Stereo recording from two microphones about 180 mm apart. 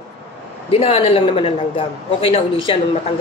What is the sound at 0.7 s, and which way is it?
Speech, 35° left (ahead or behind).